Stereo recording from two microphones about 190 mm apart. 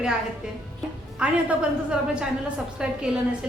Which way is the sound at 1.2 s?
5° right (ahead or behind).